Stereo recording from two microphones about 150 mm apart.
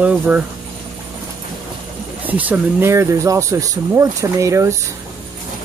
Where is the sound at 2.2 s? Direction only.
10° right (ahead or behind).